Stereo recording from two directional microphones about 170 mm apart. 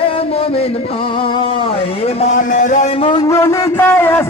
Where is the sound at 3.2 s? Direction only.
15° left (ahead or behind).